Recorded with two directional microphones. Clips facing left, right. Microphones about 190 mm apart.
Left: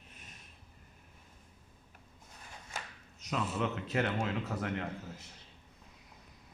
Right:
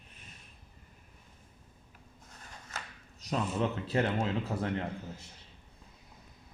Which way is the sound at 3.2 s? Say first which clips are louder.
Right 3 dB; 35° right (ahead or behind).